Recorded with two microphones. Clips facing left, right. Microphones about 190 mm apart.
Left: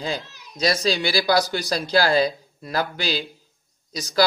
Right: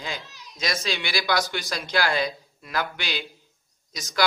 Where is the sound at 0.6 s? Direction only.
35° left (ahead or behind).